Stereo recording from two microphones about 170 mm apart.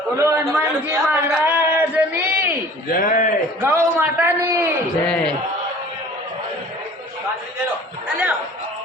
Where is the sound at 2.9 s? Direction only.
50° left (ahead or behind).